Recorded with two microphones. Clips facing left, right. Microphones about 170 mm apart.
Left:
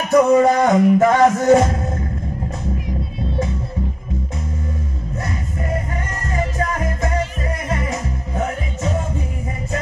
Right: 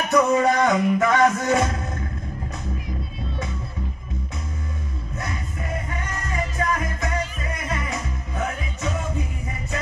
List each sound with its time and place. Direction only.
0.1 s music: 35° left (ahead or behind)
6.3 s music: 40° left (ahead or behind)